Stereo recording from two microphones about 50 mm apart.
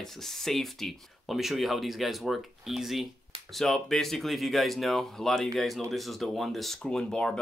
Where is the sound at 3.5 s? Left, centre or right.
Centre.